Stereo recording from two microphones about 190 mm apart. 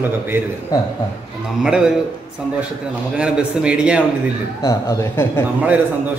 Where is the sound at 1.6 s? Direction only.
5° right (ahead or behind).